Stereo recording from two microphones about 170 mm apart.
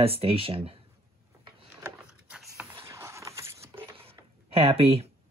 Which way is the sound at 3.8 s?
30° right (ahead or behind).